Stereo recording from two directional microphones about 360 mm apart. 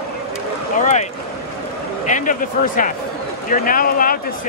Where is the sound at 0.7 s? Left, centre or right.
Centre.